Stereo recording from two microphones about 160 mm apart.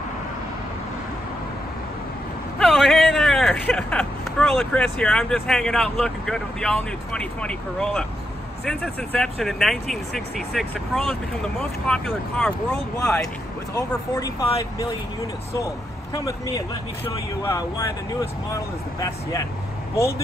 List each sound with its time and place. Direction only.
2.6 s speech: centre (ahead or behind)
13.7 s speech: 20° left (ahead or behind)